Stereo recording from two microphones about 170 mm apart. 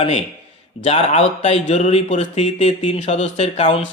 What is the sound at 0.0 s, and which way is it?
Speech, 35° left (ahead or behind).